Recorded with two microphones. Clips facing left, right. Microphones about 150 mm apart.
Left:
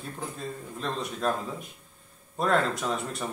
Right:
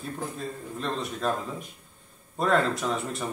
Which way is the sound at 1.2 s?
Centre (ahead or behind).